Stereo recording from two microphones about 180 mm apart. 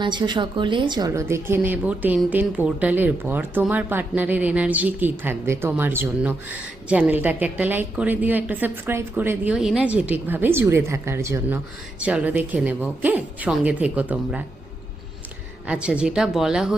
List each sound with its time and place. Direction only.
0.0 s a woman's voice: 25° right (ahead or behind); by 14.4 s 10° right (ahead or behind)
15.6 s speech: 5° right (ahead or behind)